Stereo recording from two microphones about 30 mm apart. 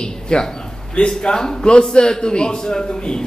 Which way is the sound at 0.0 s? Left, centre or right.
Left.